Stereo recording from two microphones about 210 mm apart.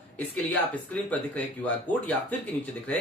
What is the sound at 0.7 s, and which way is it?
Speech, 5° left (ahead or behind).